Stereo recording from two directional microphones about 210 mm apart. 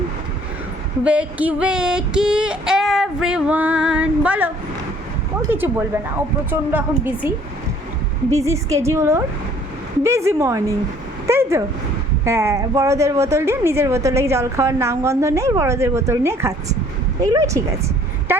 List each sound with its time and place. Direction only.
1.0 s female singing: 5° right (ahead or behind)
5.5 s a woman's voice: 10° right (ahead or behind)
8.3 s a woman's voice: 15° right (ahead or behind)
18.3 s a sound: 10° right (ahead or behind)